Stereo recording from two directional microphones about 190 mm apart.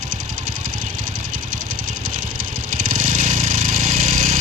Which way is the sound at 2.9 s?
40° right (ahead or behind).